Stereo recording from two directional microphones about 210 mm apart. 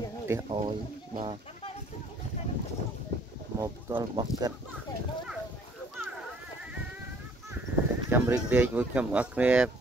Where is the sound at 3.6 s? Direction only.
20° right (ahead or behind).